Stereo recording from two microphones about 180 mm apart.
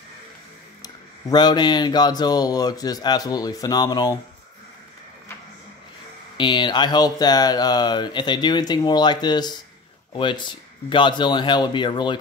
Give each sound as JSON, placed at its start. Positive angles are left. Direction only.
{"t": 0.8, "sound": "speech", "side_deg": 25}
{"t": 6.3, "sound": "speech", "side_deg": 25}